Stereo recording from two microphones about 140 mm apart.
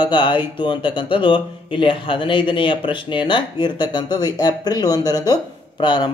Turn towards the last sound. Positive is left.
turn(degrees=35)  # may be behind; listen again after turning